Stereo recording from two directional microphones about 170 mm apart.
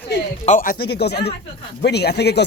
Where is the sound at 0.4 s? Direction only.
50° left (ahead or behind).